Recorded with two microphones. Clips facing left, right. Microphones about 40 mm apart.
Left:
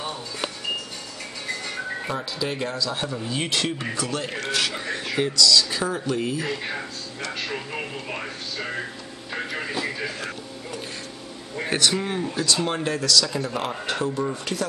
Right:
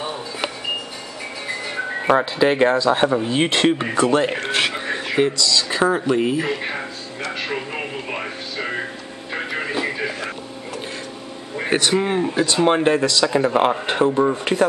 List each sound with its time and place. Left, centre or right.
1.5 s music: centre
2.0 s speech: right
9.3 s music: right
11.5 s speech: right